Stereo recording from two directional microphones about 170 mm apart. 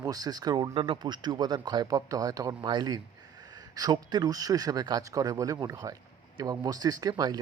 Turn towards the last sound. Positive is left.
turn(degrees=-25)  # may be behind; listen again after turning